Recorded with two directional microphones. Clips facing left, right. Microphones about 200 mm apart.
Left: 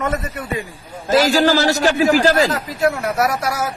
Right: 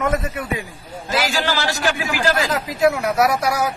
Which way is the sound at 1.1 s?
40° left (ahead or behind).